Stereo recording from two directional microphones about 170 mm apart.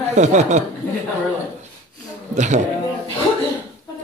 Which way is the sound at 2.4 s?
45° right (ahead or behind).